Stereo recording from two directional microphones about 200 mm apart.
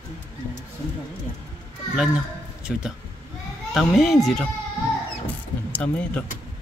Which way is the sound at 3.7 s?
Centre (ahead or behind).